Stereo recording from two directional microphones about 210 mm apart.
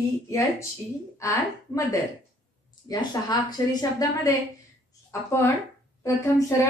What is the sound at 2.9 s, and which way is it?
A woman's voice, 20° left (ahead or behind).